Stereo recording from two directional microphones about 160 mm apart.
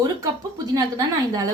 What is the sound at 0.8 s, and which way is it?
Speech, 20° right (ahead or behind).